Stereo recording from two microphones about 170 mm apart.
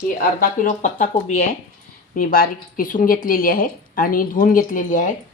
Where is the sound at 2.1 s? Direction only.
55° left (ahead or behind).